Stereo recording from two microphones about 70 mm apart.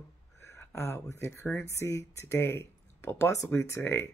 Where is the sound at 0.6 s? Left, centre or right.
Left.